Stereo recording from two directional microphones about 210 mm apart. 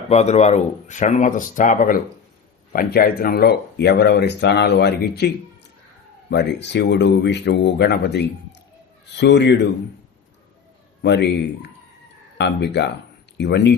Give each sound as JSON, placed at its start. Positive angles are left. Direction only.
{"t": 0.1, "sound": "speech", "side_deg": 30}
{"t": 6.3, "sound": "speech", "side_deg": 55}
{"t": 11.0, "sound": "speech", "side_deg": 55}